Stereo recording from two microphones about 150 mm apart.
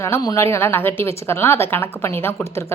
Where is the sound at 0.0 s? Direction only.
20° left (ahead or behind).